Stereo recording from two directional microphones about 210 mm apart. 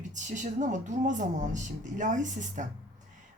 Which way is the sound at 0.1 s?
35° right (ahead or behind).